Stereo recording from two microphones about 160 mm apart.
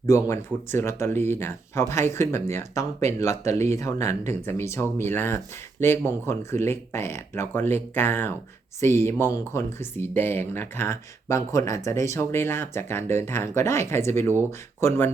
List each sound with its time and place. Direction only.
0.1 s speech: 15° left (ahead or behind)